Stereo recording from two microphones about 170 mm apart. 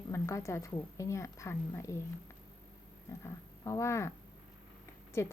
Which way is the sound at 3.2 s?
15° left (ahead or behind).